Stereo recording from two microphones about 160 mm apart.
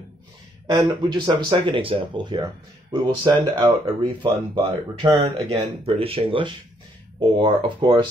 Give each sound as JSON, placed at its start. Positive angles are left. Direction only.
{"t": 1.1, "sound": "speech", "side_deg": -30}